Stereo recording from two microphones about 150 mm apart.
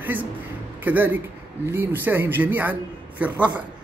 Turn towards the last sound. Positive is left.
turn(degrees=-10)  # may be behind; listen again after turning